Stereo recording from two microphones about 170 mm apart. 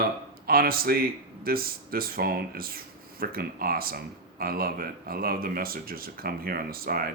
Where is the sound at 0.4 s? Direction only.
60° right (ahead or behind).